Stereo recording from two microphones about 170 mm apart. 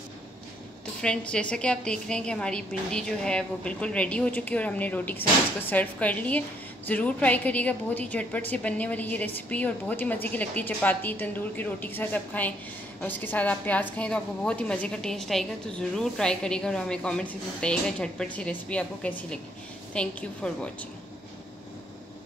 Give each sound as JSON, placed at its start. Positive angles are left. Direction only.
{"t": 1.0, "sound": "a woman's voice", "side_deg": 5}